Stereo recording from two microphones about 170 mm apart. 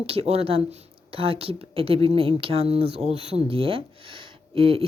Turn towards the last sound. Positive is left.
turn(degrees=-35)  # may be behind; listen again after turning